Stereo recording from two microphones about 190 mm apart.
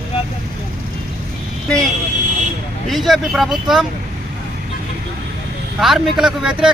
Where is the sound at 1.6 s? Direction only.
5° left (ahead or behind).